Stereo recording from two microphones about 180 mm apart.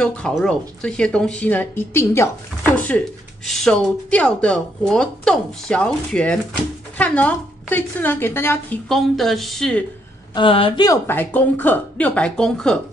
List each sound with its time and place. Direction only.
0.0 s a woman's voice: 5° left (ahead or behind)
8.8 s speech: centre (ahead or behind)
10.3 s a woman's voice: 30° left (ahead or behind)
10.9 s a woman's voice: 10° left (ahead or behind)